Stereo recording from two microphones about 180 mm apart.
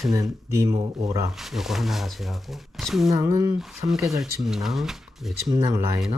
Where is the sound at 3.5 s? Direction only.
Centre (ahead or behind).